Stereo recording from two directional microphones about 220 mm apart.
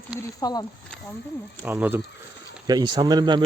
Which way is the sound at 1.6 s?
10° right (ahead or behind).